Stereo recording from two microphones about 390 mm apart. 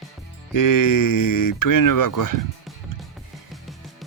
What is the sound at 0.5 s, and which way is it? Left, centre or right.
Speech, left.